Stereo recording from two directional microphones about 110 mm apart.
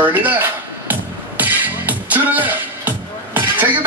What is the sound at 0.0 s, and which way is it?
Music, 15° right (ahead or behind).